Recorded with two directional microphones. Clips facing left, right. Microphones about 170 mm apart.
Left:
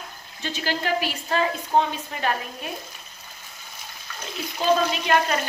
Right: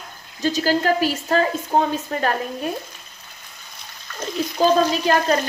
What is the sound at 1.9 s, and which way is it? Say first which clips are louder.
Speech: right 6 dB; 45° right (ahead or behind).